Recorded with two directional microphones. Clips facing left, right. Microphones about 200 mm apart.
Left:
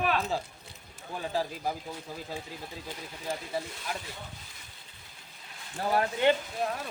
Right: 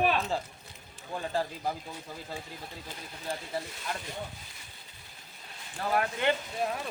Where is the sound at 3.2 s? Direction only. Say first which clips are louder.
Left 1 dB; 10° left (ahead or behind).